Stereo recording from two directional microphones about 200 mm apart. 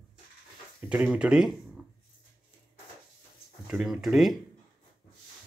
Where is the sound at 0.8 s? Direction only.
5° right (ahead or behind).